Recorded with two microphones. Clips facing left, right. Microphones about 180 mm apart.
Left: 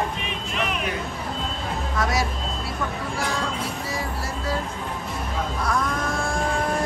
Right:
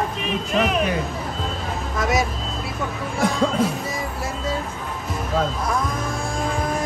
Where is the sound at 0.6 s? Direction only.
40° right (ahead or behind).